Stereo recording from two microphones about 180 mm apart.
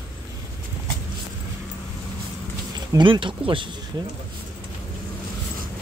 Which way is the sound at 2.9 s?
25° right (ahead or behind).